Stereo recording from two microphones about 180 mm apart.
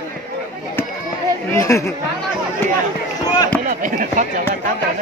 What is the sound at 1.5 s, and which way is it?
Speech, 15° left (ahead or behind).